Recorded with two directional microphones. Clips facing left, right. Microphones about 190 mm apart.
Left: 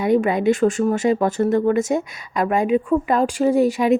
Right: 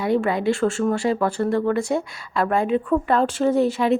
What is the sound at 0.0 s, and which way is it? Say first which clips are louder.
Speech: left 3 dB; 20° left (ahead or behind).